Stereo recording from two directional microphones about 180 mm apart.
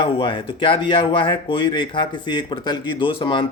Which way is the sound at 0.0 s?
30° left (ahead or behind).